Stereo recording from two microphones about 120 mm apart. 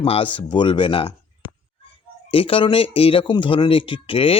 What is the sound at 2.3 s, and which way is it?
Speech, 50° left (ahead or behind).